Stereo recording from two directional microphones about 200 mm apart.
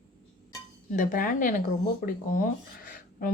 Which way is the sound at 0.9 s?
45° left (ahead or behind).